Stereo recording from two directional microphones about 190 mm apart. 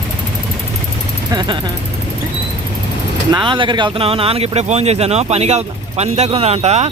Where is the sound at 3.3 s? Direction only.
25° right (ahead or behind).